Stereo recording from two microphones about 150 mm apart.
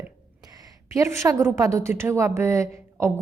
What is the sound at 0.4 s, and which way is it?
A woman's voice, 25° right (ahead or behind).